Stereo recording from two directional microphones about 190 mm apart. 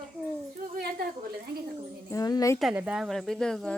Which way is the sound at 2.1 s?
20° left (ahead or behind).